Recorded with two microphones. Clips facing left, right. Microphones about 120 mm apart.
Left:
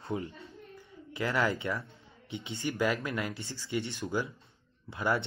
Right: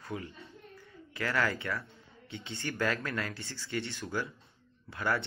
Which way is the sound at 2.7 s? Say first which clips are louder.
Left 2 dB; 15° left (ahead or behind).